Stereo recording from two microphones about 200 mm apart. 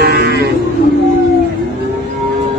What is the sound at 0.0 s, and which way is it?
Livestock, 50° right (ahead or behind).